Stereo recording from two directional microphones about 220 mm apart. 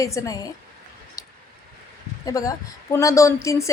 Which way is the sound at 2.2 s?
15° left (ahead or behind).